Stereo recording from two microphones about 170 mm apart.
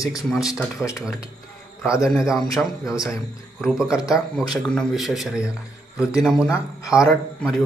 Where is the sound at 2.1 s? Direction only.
Centre (ahead or behind).